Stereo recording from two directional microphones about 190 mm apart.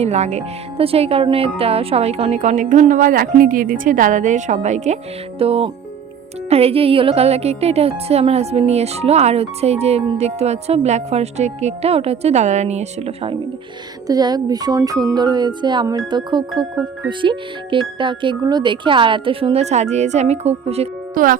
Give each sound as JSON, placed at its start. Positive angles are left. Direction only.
{"t": 0.0, "sound": "speech", "side_deg": -35}
{"t": 21.2, "sound": "speech", "side_deg": -45}